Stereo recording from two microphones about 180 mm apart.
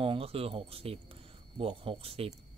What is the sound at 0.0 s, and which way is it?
Speech, 30° right (ahead or behind).